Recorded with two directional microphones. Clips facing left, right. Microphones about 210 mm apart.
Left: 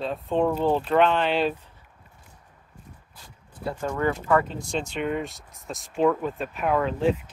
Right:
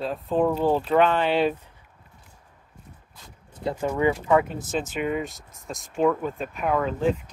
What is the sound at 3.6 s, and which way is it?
Speech, 20° right (ahead or behind).